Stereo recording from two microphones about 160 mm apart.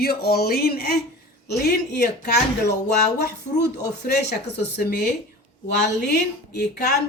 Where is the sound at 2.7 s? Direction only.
90° left.